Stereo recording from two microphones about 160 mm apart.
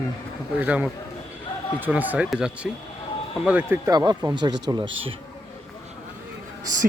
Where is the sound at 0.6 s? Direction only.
10° right (ahead or behind).